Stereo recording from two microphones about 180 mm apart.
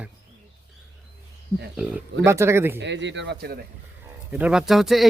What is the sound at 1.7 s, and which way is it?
Speech, 5° right (ahead or behind).